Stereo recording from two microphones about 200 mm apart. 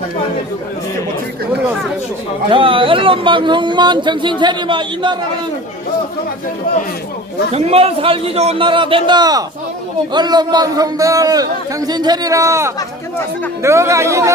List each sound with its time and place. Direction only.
2.5 s speech: 25° right (ahead or behind)
7.5 s speech: 30° right (ahead or behind); by 14.3 s 15° right (ahead or behind)